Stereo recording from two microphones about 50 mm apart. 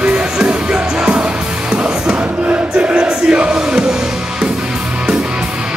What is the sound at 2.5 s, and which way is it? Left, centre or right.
Music, right.